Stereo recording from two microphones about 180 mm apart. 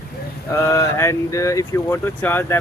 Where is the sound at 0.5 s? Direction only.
15° left (ahead or behind).